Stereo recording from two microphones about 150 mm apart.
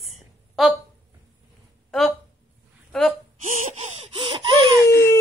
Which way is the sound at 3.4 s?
50° right (ahead or behind).